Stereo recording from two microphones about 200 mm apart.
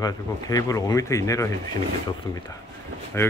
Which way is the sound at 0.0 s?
20° left (ahead or behind).